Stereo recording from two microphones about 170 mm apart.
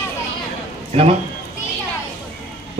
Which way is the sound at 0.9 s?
35° right (ahead or behind).